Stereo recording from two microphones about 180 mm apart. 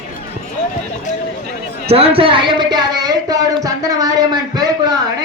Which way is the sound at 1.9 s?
30° right (ahead or behind).